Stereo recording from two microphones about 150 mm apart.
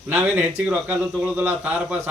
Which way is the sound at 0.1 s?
10° right (ahead or behind).